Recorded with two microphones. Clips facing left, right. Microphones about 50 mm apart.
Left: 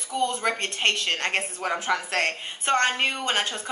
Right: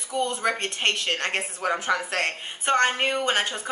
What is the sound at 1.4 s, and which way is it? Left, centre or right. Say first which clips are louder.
A woman's voice: right 1 dB; centre.